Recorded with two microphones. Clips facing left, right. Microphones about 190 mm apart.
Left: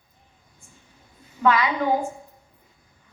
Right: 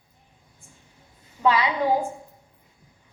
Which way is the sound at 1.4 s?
30° right (ahead or behind).